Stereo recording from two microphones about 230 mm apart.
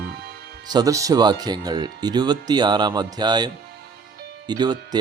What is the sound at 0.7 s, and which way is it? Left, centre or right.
Speech, centre.